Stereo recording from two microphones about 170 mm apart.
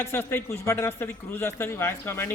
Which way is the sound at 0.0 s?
15° left (ahead or behind).